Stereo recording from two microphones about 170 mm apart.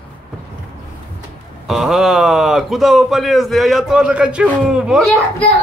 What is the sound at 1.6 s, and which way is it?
Speech, centre (ahead or behind).